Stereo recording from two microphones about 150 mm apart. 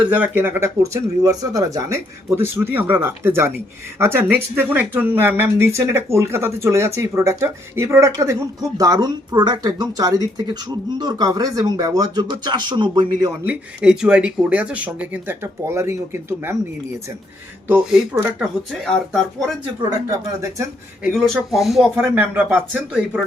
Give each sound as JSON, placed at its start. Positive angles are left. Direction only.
{"t": 0.0, "sound": "speech", "side_deg": -10}
{"t": 13.4, "sound": "speech", "side_deg": -5}
{"t": 17.7, "sound": "speech", "side_deg": -5}
{"t": 21.0, "sound": "speech", "side_deg": 0}